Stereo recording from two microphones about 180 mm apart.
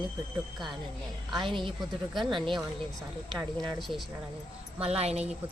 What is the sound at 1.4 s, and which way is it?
Speech, 25° right (ahead or behind).